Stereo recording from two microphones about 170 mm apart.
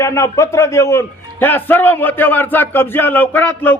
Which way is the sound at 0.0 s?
20° left (ahead or behind).